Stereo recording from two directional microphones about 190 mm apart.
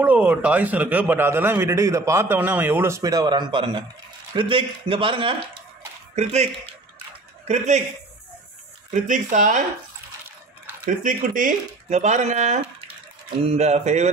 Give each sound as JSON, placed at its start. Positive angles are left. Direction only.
{"t": 0.0, "sound": "a man's voice", "side_deg": -10}
{"t": 8.9, "sound": "speech", "side_deg": -40}
{"t": 10.9, "sound": "speech", "side_deg": -45}